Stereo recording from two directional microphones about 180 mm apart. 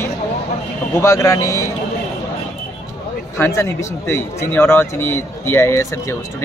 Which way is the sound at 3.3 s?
15° left (ahead or behind).